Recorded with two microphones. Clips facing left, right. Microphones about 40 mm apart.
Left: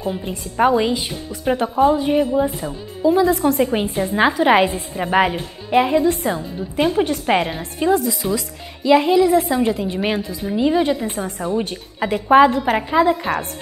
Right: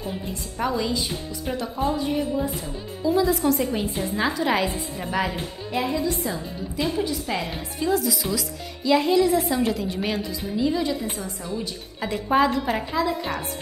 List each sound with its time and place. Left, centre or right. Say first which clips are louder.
0.2 s a woman's voice: left 12 dB; left
7.8 s a woman's voice: left 6 dB; left
8.2 s a woman's voice: left 5 dB; left
11.1 s a woman's voice: left 9 dB; left
12.0 s a woman's voice: left 8 dB; left